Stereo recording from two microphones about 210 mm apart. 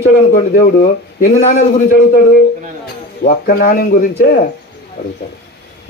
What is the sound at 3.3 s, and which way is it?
A man's voice, 45° left (ahead or behind).